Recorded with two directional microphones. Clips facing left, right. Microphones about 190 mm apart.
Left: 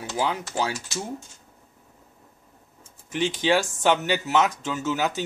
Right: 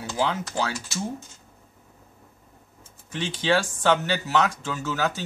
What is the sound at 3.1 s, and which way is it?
Speech, 15° left (ahead or behind).